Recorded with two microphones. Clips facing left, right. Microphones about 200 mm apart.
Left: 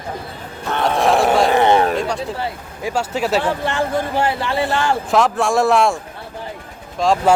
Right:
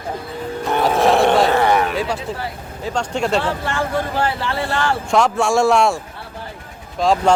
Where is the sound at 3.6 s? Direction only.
20° left (ahead or behind).